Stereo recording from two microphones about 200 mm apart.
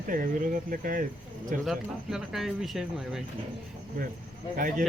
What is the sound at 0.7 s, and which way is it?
Speech, 45° right (ahead or behind).